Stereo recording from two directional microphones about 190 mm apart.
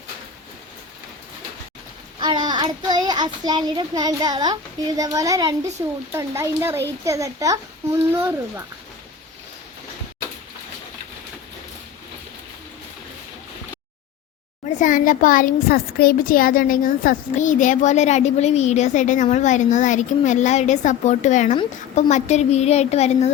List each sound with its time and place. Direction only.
2.2 s a child's voice: 25° right (ahead or behind)
14.8 s a woman's voice: 45° left (ahead or behind)